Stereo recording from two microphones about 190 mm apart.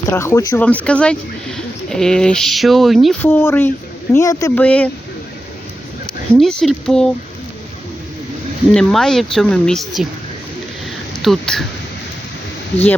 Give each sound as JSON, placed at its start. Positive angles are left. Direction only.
{"t": 0.1, "sound": "speech", "side_deg": 15}
{"t": 4.6, "sound": "speech", "side_deg": 5}
{"t": 6.3, "sound": "speech", "side_deg": 5}
{"t": 8.7, "sound": "speech", "side_deg": 5}
{"t": 11.2, "sound": "speech", "side_deg": 0}